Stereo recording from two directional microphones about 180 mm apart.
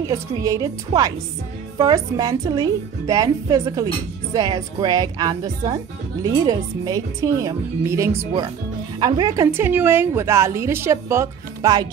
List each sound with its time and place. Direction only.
0.0 s a woman's voice: 20° right (ahead or behind)